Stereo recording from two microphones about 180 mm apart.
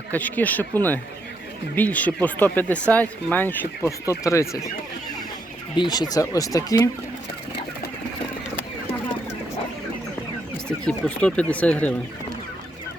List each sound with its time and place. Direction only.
0.1 s speech: 10° left (ahead or behind)
1.7 s speech: 10° left (ahead or behind)
5.7 s speech: 25° left (ahead or behind)
10.8 s speech: 5° left (ahead or behind)